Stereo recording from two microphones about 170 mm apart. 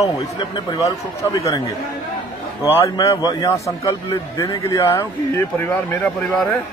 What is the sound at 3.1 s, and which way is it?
A man's voice, 20° left (ahead or behind).